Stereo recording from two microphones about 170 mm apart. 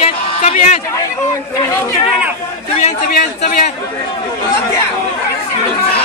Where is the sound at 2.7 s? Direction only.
40° left (ahead or behind).